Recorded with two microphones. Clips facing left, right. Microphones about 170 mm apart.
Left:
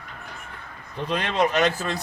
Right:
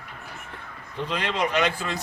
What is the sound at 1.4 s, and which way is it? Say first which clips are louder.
Speech: left 4 dB; 40° left (ahead or behind).